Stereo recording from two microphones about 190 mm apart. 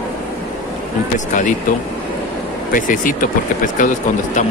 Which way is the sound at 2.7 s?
45° left (ahead or behind).